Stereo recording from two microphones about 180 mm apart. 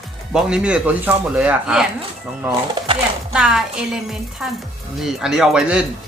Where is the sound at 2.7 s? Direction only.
30° right (ahead or behind).